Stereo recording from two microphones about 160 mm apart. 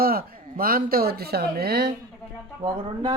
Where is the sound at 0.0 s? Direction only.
65° right (ahead or behind).